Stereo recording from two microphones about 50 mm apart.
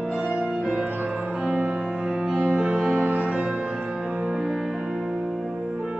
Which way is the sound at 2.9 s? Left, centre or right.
Right.